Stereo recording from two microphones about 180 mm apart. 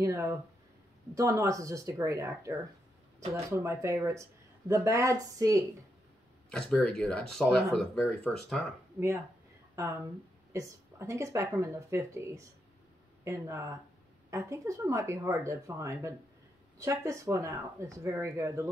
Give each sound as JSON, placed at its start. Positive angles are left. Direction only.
{"t": 0.0, "sound": "speech", "side_deg": -15}
{"t": 6.5, "sound": "speech", "side_deg": 0}
{"t": 10.5, "sound": "speech", "side_deg": -15}